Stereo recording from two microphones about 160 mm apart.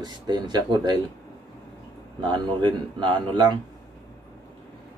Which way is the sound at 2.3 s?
30° right (ahead or behind).